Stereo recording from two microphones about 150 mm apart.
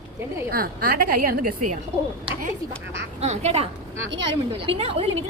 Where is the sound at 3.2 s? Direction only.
45° right (ahead or behind).